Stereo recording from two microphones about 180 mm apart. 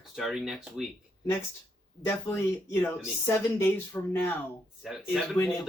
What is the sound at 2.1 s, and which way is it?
Speech, 15° left (ahead or behind).